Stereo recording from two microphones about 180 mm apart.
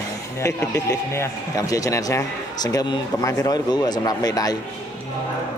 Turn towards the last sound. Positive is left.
turn(degrees=20)  # may be behind; listen again after turning